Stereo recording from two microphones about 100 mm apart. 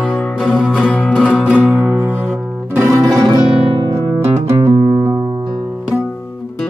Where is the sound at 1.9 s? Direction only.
20° right (ahead or behind).